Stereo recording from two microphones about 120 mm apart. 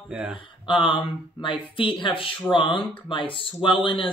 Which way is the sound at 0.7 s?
45° left (ahead or behind).